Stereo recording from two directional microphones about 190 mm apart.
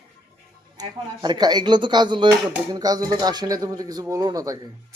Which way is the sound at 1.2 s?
20° right (ahead or behind).